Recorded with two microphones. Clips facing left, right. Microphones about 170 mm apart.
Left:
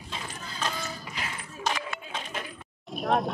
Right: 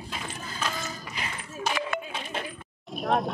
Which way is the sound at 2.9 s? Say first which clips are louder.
Even; centre (ahead or behind).